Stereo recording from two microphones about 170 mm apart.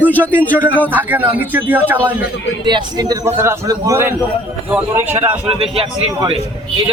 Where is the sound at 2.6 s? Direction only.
25° right (ahead or behind); by 5.1 s 10° right (ahead or behind).